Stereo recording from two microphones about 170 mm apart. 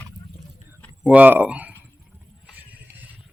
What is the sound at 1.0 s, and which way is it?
Speech, 10° right (ahead or behind).